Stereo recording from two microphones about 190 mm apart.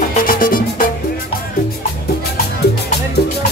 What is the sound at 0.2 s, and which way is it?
Music, 45° left (ahead or behind).